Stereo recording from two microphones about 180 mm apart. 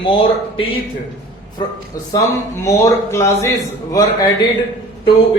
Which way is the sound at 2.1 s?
20° left (ahead or behind).